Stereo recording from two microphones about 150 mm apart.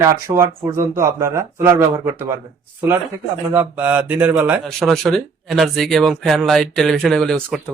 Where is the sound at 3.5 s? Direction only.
10° right (ahead or behind).